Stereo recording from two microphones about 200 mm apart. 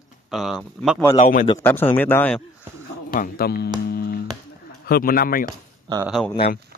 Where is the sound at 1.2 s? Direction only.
40° left (ahead or behind).